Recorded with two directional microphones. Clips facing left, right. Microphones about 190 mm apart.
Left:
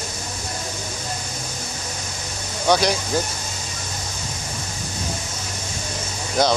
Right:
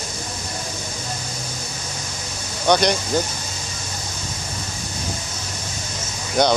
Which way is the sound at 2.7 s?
5° left (ahead or behind).